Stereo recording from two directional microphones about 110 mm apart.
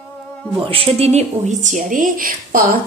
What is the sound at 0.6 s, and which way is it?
Speech, 60° right (ahead or behind).